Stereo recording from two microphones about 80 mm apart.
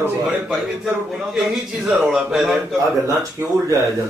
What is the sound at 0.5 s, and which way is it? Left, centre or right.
A man's voice, centre.